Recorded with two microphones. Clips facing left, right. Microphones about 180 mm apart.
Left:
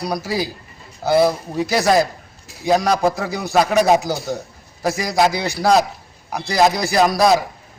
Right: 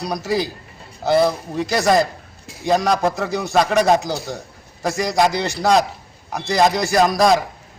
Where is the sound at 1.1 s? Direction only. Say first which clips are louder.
Left 1 dB; 5° left (ahead or behind).